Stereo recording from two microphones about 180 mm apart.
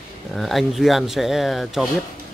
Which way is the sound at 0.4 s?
Centre (ahead or behind).